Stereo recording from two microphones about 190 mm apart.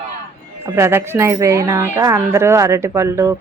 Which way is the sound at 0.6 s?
15° right (ahead or behind).